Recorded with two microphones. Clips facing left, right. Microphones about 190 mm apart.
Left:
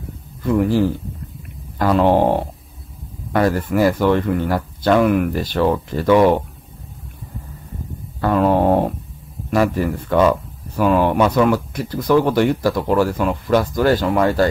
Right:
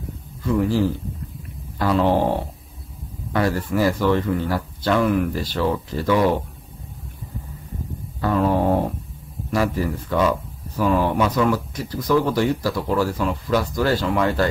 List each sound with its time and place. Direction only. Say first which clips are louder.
0.4 s a man's voice: left 3 dB; 55° left (ahead or behind)
1.8 s a sound: left 4 dB; 50° left (ahead or behind)
3.3 s speech: left 4 dB; 50° left (ahead or behind)
8.2 s a sound: left 4 dB; 70° left (ahead or behind)
9.5 s speech: left 4 dB; 60° left (ahead or behind)
10.8 s speech: left 4 dB; 70° left (ahead or behind); by 14.5 s 40° left (ahead or behind)